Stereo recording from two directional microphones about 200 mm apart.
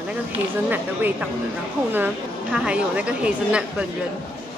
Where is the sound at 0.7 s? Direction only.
10° right (ahead or behind).